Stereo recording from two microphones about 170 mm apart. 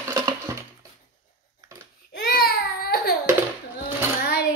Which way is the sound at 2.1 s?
65° left (ahead or behind).